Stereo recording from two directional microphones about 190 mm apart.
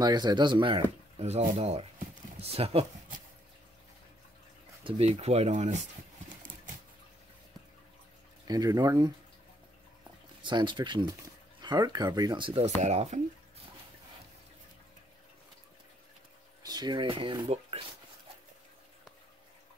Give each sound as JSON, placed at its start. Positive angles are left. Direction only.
{"t": 0.0, "sound": "speech", "side_deg": -20}
{"t": 4.8, "sound": "speech", "side_deg": -30}
{"t": 8.5, "sound": "speech", "side_deg": -20}
{"t": 10.4, "sound": "speech", "side_deg": -25}
{"t": 16.6, "sound": "speech", "side_deg": -20}